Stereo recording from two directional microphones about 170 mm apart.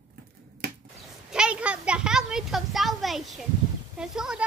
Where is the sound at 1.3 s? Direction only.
5° right (ahead or behind).